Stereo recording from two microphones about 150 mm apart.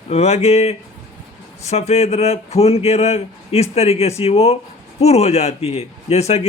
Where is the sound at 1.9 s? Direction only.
45° left (ahead or behind).